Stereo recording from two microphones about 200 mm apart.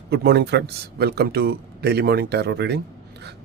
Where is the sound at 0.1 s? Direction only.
55° right (ahead or behind).